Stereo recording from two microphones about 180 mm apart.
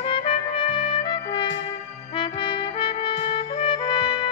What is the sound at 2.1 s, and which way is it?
Trumpet, 25° left (ahead or behind).